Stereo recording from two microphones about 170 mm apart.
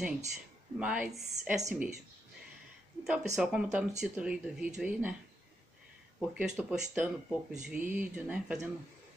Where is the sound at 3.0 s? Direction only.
5° right (ahead or behind).